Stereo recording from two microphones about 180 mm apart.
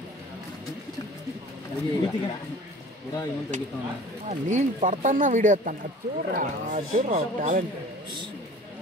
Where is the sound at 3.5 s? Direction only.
45° right (ahead or behind).